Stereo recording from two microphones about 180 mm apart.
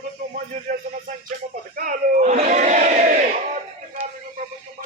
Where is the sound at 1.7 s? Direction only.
50° right (ahead or behind).